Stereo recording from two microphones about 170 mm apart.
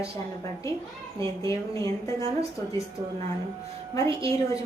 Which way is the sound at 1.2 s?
20° left (ahead or behind).